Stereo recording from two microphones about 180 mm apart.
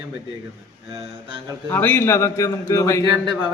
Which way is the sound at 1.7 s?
10° left (ahead or behind).